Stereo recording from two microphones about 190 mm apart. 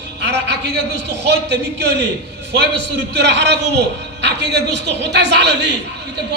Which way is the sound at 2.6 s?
60° right (ahead or behind).